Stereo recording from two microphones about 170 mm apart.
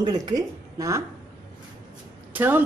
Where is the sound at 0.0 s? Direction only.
25° right (ahead or behind).